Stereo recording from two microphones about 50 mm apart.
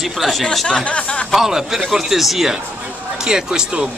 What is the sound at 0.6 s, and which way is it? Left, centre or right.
Speech, left.